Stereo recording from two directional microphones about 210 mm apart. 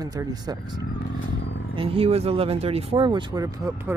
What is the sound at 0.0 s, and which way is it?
Speech, 20° right (ahead or behind).